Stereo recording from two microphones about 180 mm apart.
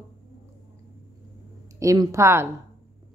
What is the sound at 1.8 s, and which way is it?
Speech, 20° right (ahead or behind).